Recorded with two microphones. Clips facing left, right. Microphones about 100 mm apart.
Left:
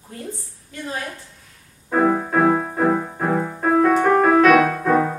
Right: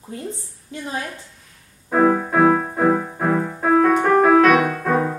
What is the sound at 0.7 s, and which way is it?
Speech, 25° right (ahead or behind).